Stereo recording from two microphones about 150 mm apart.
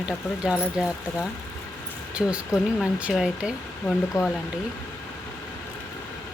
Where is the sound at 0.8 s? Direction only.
5° right (ahead or behind).